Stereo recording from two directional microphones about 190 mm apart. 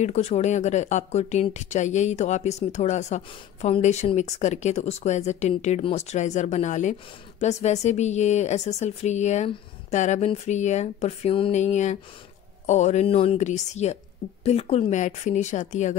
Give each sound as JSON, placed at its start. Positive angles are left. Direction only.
{"t": 0.0, "sound": "speech", "side_deg": 35}